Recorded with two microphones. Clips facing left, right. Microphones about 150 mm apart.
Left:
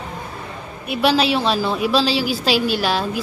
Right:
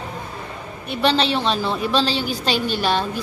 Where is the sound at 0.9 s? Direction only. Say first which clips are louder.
Left 2 dB; 5° left (ahead or behind).